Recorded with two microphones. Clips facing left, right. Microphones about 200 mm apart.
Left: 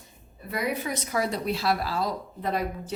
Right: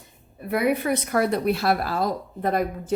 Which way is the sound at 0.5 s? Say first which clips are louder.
Right 7 dB; 60° right (ahead or behind).